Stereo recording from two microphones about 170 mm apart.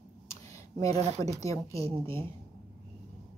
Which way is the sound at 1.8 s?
35° right (ahead or behind).